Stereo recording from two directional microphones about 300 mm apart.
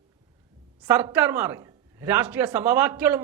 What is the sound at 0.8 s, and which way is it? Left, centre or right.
A man's voice, centre.